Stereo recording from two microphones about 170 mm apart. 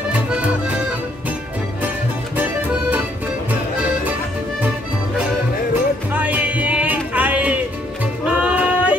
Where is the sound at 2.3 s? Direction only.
10° right (ahead or behind).